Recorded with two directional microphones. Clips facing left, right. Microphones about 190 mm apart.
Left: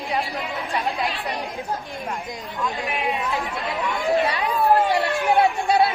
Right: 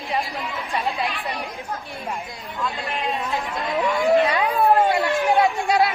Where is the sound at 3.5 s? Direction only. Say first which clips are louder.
Right 3 dB; 40° right (ahead or behind).